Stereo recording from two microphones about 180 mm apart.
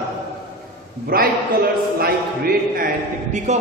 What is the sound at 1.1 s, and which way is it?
Speech, 55° right (ahead or behind).